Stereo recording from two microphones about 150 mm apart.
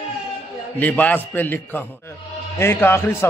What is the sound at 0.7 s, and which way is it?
A man's voice, 10° left (ahead or behind).